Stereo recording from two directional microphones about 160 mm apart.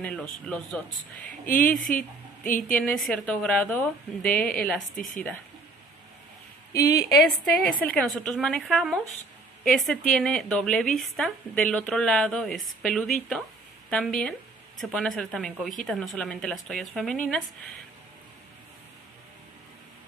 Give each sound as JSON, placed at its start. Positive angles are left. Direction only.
{"t": 0.0, "sound": "speech", "side_deg": 5}
{"t": 1.4, "sound": "speech", "side_deg": 60}
{"t": 2.7, "sound": "a woman's voice", "side_deg": 5}
{"t": 4.9, "sound": "speech", "side_deg": 55}
{"t": 6.7, "sound": "a woman's voice", "side_deg": 20}
{"t": 7.2, "sound": "a woman's voice", "side_deg": 0}